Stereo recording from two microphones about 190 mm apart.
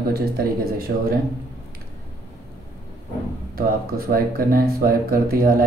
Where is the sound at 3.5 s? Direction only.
50° right (ahead or behind).